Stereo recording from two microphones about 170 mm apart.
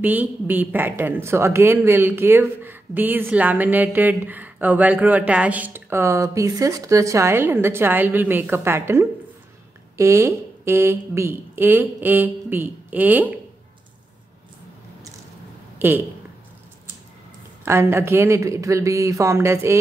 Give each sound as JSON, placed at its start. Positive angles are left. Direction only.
{"t": 0.0, "sound": "speech", "side_deg": -10}
{"t": 15.8, "sound": "speech", "side_deg": -15}
{"t": 17.6, "sound": "speech", "side_deg": -15}